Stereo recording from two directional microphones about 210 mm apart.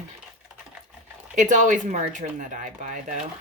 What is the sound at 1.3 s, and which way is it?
Speech, 35° right (ahead or behind).